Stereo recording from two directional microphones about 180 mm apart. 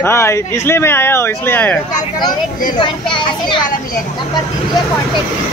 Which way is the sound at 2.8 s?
25° left (ahead or behind).